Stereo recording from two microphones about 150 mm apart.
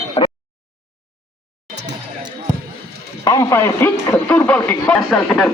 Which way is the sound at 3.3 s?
20° left (ahead or behind).